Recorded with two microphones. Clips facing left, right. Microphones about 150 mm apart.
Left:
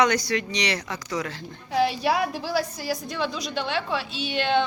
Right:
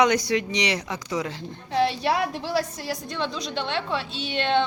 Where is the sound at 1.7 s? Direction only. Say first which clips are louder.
Even; 5° left (ahead or behind).